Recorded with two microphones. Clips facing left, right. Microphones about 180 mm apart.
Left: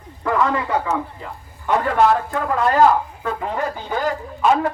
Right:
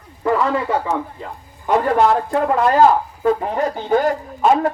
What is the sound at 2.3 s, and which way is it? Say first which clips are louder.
Speech: right 3 dB; 30° right (ahead or behind).